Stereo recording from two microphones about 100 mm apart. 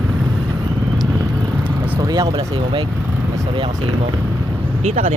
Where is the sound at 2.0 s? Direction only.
40° right (ahead or behind).